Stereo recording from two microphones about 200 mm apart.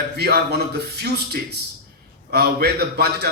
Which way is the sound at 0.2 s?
55° right (ahead or behind).